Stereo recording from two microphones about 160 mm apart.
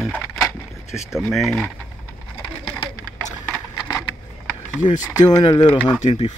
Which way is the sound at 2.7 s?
10° left (ahead or behind).